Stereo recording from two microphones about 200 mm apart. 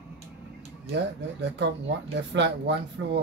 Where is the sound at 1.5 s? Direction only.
60° right (ahead or behind).